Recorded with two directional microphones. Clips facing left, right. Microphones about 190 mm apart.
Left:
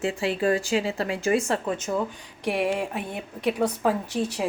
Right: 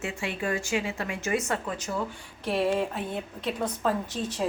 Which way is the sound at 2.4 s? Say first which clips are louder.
Left 1 dB; 15° left (ahead or behind).